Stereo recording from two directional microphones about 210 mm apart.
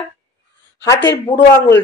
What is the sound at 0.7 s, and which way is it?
Speech, 60° left (ahead or behind).